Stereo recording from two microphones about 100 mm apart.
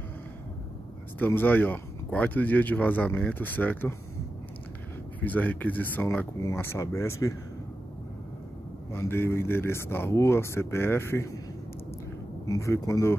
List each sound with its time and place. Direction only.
1.2 s speech: 20° left (ahead or behind)
5.2 s speech: 15° left (ahead or behind)
8.9 s speech: 25° left (ahead or behind)
12.4 s a man's voice: 30° left (ahead or behind)